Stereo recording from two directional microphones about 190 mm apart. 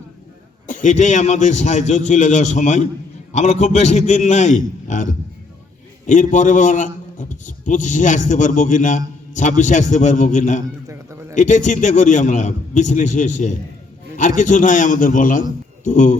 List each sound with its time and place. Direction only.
0.7 s a man's voice: 40° left (ahead or behind)
10.8 s a sound: 15° right (ahead or behind)
11.3 s a man's voice: 40° left (ahead or behind)